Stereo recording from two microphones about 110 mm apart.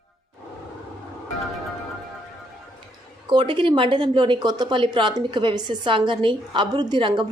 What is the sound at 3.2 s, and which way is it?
Speech, 45° right (ahead or behind).